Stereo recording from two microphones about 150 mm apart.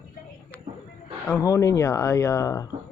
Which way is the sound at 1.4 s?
20° left (ahead or behind).